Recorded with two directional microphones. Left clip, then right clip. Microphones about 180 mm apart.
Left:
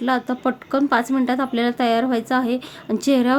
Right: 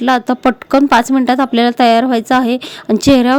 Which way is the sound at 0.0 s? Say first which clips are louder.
Right 9 dB; 50° right (ahead or behind).